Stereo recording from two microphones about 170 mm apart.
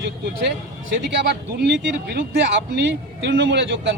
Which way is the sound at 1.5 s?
85° right.